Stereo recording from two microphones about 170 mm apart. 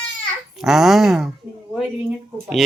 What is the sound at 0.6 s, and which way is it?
Speech, centre (ahead or behind).